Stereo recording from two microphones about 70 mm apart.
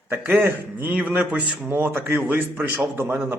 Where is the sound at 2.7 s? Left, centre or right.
Right.